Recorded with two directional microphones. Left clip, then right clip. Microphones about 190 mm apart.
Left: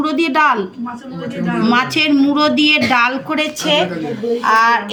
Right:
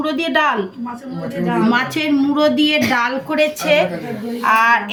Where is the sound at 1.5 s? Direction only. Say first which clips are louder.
Left 4 dB; 15° left (ahead or behind).